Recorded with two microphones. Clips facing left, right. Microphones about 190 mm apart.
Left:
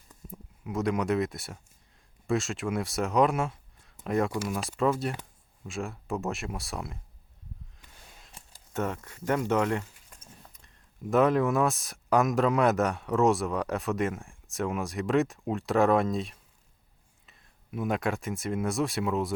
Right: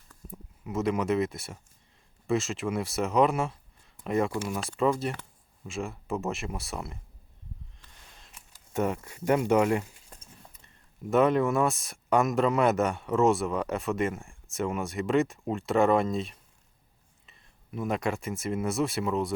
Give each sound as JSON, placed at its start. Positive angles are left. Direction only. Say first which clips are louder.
{"t": 0.3, "sound": "speech", "louder": "even", "side_deg": 0}
{"t": 8.7, "sound": "speech", "louder": "right 3 dB", "side_deg": -10}
{"t": 10.1, "sound": "a sound", "louder": "right 7 dB", "side_deg": -35}
{"t": 11.1, "sound": "speech", "louder": "even", "side_deg": 0}